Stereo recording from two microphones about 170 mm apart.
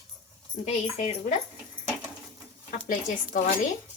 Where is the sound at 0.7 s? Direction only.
35° left (ahead or behind).